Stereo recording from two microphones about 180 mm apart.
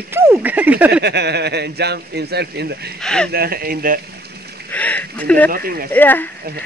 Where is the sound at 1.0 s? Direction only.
65° right (ahead or behind).